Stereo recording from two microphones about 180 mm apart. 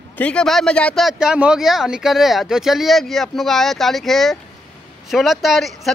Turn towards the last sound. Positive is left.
turn(degrees=0)  # may be behind; listen again after turning